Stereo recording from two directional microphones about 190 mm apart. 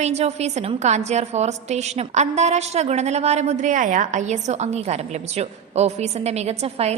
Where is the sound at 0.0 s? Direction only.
35° right (ahead or behind).